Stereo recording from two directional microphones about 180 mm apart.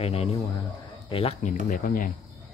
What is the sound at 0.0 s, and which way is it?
Speech, 35° left (ahead or behind).